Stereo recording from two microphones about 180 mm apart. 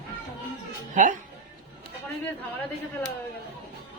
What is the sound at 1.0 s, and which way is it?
Speech, 45° right (ahead or behind).